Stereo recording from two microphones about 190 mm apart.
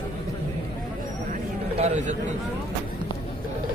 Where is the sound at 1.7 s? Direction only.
35° right (ahead or behind).